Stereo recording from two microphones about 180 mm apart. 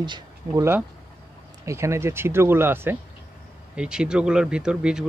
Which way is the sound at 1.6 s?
15° right (ahead or behind).